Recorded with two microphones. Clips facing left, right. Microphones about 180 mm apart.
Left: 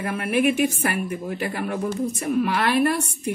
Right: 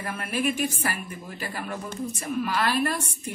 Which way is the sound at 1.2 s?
55° left (ahead or behind).